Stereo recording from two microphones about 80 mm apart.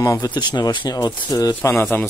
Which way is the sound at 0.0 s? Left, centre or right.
Left.